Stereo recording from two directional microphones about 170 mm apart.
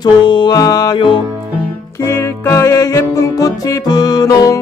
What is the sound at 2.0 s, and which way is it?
Music, 15° left (ahead or behind).